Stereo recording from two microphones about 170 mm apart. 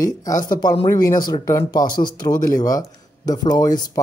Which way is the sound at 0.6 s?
35° left (ahead or behind).